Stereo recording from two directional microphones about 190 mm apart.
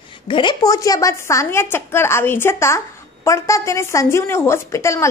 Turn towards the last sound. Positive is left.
turn(degrees=15)  # may be behind; listen again after turning